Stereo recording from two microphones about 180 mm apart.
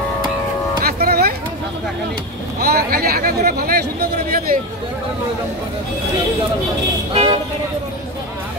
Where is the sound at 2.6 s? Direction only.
60° right (ahead or behind).